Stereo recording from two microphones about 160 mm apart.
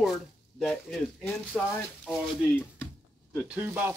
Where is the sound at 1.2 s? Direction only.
15° left (ahead or behind).